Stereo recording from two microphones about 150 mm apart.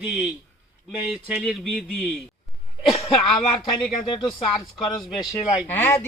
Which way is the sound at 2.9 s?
35° left (ahead or behind).